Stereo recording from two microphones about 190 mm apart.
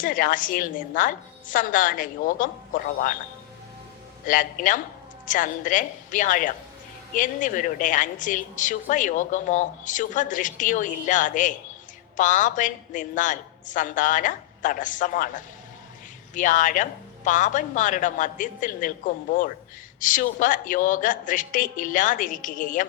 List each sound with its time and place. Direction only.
0.0 s a woman's voice: 45° left (ahead or behind)
4.3 s a woman's voice: 45° left (ahead or behind)